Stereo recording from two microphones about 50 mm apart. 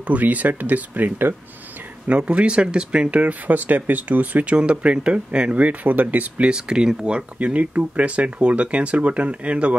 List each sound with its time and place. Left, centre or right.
0.0 s speech: right
2.0 s speech: right
4.6 s speech: right
5.6 s speech: right; by 7.2 s centre
7.3 s speech: right